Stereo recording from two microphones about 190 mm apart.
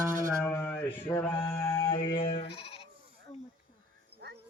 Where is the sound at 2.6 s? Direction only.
30° left (ahead or behind).